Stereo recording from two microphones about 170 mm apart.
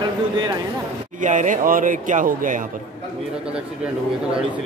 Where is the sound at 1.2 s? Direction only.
50° right (ahead or behind).